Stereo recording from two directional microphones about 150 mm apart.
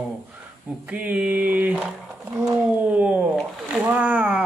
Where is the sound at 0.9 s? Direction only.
10° right (ahead or behind).